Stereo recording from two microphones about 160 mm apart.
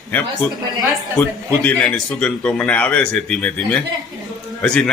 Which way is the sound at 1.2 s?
10° left (ahead or behind).